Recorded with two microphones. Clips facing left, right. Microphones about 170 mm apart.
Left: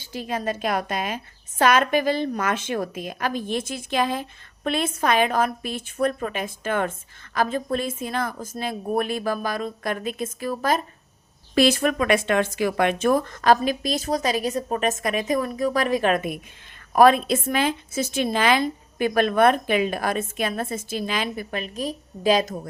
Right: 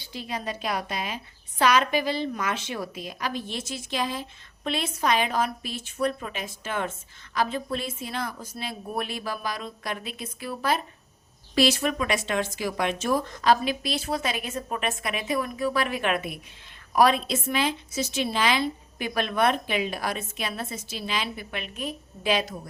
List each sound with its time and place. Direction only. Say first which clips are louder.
0.0 s a woman's voice: left 6 dB; 45° left (ahead or behind)